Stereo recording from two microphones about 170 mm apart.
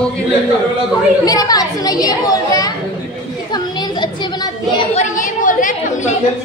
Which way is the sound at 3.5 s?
25° left (ahead or behind).